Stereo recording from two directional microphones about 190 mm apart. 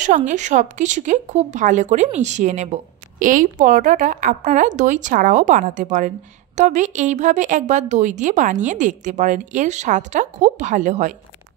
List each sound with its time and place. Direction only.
0.3 s speech: 40° right (ahead or behind)